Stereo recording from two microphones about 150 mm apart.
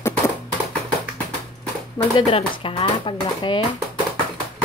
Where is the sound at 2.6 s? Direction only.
35° left (ahead or behind).